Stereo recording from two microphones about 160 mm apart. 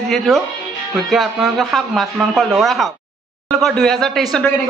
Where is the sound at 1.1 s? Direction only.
Centre (ahead or behind).